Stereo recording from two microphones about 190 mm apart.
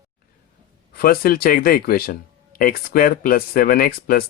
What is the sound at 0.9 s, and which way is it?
Speech, 50° left (ahead or behind).